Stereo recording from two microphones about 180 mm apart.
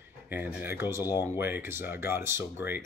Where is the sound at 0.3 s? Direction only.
10° right (ahead or behind).